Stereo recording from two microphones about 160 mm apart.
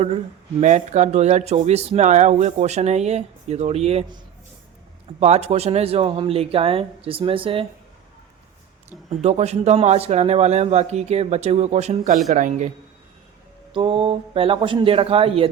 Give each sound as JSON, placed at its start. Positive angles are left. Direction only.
{"t": 0.6, "sound": "speech", "side_deg": -50}
{"t": 5.2, "sound": "speech", "side_deg": -40}
{"t": 8.9, "sound": "speech", "side_deg": -45}
{"t": 13.7, "sound": "speech", "side_deg": -30}